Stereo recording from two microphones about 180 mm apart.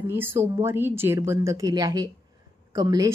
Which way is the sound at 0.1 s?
15° right (ahead or behind).